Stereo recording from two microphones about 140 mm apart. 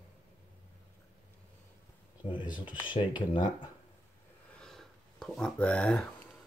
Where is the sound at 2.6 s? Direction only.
35° left (ahead or behind).